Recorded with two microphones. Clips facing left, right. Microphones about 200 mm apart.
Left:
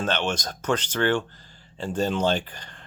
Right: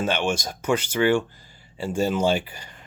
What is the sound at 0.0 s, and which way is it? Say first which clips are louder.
Speech: right 2 dB; 10° right (ahead or behind).